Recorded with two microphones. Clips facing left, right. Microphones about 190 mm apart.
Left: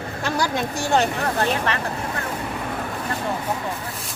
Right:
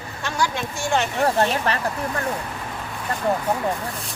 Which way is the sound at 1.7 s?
35° right (ahead or behind).